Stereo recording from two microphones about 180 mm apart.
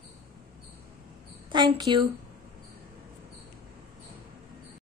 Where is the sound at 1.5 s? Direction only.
25° right (ahead or behind).